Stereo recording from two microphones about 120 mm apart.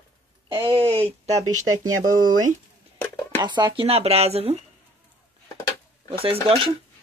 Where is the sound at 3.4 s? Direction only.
40° right (ahead or behind).